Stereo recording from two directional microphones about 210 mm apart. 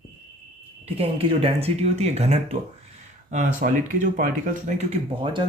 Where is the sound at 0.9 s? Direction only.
25° right (ahead or behind).